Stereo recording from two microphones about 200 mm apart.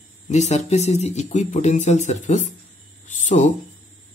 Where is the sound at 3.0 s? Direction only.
35° left (ahead or behind).